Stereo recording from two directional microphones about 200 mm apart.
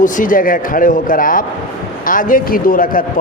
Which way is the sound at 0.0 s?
40° left (ahead or behind).